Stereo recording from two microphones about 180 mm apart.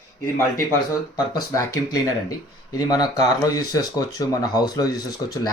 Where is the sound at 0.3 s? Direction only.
15° left (ahead or behind).